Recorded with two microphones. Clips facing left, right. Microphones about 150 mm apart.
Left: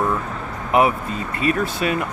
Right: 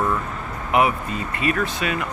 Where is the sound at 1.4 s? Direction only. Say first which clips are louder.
Left 3 dB; 35° left (ahead or behind).